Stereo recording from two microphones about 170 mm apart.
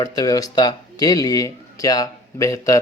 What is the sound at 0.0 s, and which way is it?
A man's voice, 20° left (ahead or behind).